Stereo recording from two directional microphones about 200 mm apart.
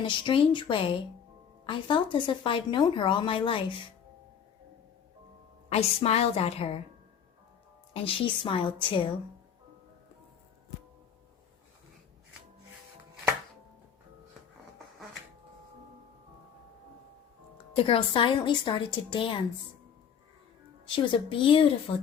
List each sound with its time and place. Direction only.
0.0 s speech: 25° left (ahead or behind)
5.6 s a woman's voice: 30° left (ahead or behind)
7.9 s speech: 25° left (ahead or behind)
17.7 s speech: 25° left (ahead or behind)
20.8 s speech: 25° left (ahead or behind)